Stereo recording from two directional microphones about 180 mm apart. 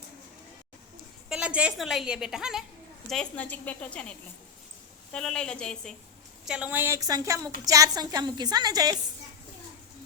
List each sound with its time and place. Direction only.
1.3 s a woman's voice: 5° right (ahead or behind)
5.1 s a woman's voice: 5° left (ahead or behind); by 9.0 s 20° right (ahead or behind)